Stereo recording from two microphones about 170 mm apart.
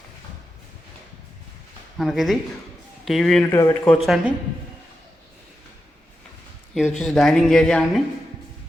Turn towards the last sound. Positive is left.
turn(degrees=5)  # may be behind; listen again after turning